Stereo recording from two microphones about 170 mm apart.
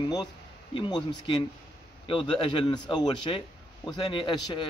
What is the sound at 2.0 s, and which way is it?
A man's voice, 30° left (ahead or behind).